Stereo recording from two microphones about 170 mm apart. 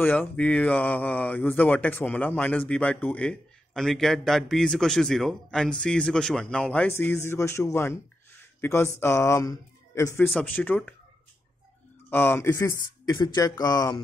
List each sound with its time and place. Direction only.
0.0 s speech: 10° left (ahead or behind)
12.1 s speech: 15° left (ahead or behind)